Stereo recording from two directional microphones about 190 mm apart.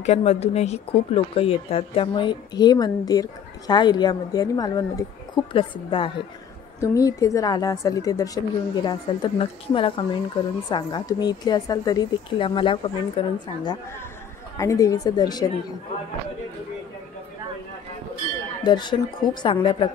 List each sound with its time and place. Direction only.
0.0 s speech: 35° left (ahead or behind)
6.8 s speech: 15° left (ahead or behind)
14.6 s speech: 15° left (ahead or behind)
18.6 s speech: 25° left (ahead or behind)